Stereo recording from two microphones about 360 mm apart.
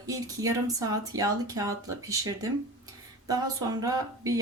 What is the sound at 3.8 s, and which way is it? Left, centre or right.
Speech, centre.